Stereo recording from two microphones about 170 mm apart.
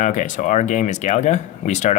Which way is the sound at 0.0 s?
45° left (ahead or behind).